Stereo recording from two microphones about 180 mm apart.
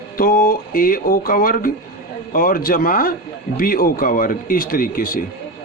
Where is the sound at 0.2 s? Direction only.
55° left (ahead or behind).